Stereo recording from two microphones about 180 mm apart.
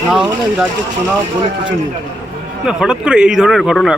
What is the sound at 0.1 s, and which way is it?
Speech, 5° right (ahead or behind).